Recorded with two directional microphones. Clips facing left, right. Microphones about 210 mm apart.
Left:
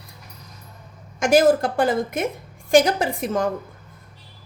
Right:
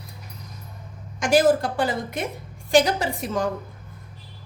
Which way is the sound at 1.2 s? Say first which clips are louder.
Left 2 dB; 50° left (ahead or behind).